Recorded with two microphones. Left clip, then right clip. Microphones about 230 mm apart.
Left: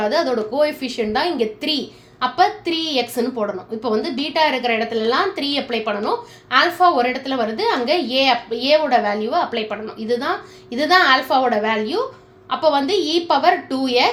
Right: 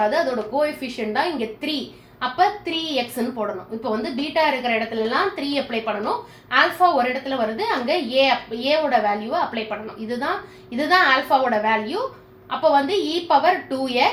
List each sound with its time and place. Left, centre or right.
0.1 s a woman's voice: left